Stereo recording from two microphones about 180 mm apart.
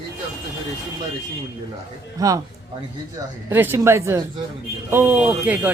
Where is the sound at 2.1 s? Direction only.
20° right (ahead or behind).